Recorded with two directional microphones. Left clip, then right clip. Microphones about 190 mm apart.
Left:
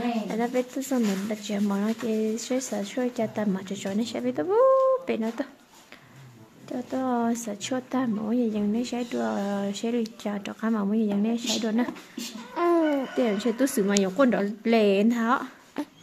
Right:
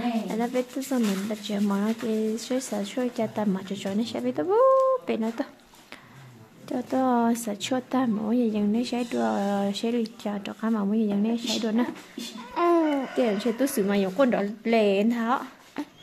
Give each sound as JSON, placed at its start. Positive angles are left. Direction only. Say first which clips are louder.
{"t": 0.3, "sound": "speech", "louder": "left 1 dB", "side_deg": 0}
{"t": 6.7, "sound": "speech", "louder": "right 4 dB", "side_deg": -15}
{"t": 12.5, "sound": "a sound", "louder": "right 1 dB", "side_deg": -5}
{"t": 13.1, "sound": "a woman's voice", "louder": "right 1 dB", "side_deg": 10}
{"t": 15.8, "sound": "dog", "louder": "left 1 dB", "side_deg": 0}